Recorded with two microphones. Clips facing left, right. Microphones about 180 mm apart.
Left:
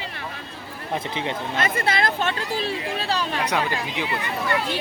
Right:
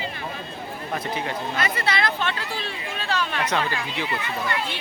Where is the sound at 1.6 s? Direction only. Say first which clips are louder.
Left 3 dB; 50° left (ahead or behind).